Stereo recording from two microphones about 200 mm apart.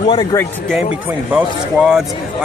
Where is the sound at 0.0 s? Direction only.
25° left (ahead or behind).